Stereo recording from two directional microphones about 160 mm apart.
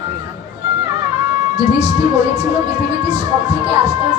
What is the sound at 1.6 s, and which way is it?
Music, 40° right (ahead or behind).